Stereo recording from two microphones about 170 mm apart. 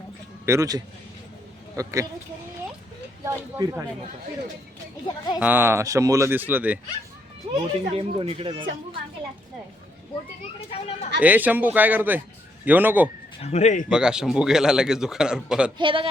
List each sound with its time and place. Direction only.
0.4 s speech: 15° right (ahead or behind)
3.2 s speech: 20° right (ahead or behind)
5.4 s speech: 10° right (ahead or behind)
7.5 s speech: 35° right (ahead or behind)
10.7 s speech: 35° left (ahead or behind)
11.2 s speech: 10° right (ahead or behind)
13.4 s speech: 40° left (ahead or behind)
13.9 s a man's voice: 5° right (ahead or behind)
15.8 s speech: 30° right (ahead or behind)